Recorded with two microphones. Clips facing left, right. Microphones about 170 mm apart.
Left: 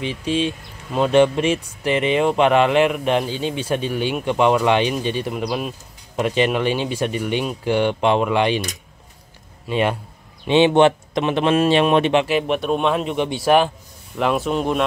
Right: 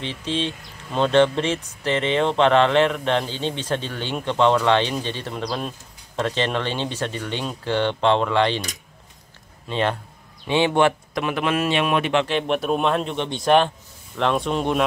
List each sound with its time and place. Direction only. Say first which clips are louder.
0.0 s speech: left 4 dB; 10° left (ahead or behind)
9.7 s speech: left 3 dB; 10° left (ahead or behind)
12.3 s a man's voice: left 2 dB; 5° left (ahead or behind)